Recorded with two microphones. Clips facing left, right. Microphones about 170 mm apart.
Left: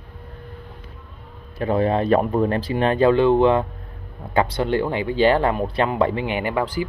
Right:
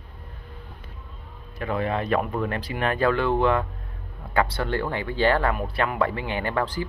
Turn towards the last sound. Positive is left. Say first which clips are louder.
# left 3 dB
turn(degrees=10)  # may be behind; listen again after turning